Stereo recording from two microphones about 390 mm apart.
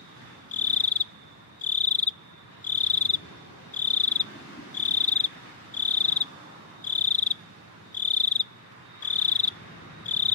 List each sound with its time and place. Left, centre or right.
0.5 s cricket: centre